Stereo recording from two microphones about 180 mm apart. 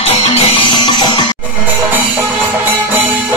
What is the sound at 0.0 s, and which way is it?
Music, 35° left (ahead or behind).